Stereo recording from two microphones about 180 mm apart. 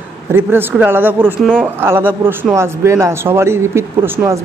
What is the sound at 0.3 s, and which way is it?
Speech, 15° right (ahead or behind).